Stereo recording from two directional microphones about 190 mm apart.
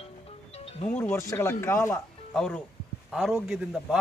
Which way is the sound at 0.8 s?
10° left (ahead or behind).